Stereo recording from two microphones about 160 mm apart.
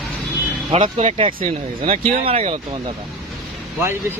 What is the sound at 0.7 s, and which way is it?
Speech, 40° right (ahead or behind).